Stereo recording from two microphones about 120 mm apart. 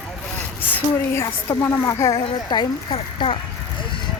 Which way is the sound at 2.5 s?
40° left (ahead or behind).